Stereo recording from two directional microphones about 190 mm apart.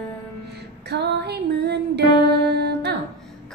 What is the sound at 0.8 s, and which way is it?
Music, 60° right (ahead or behind).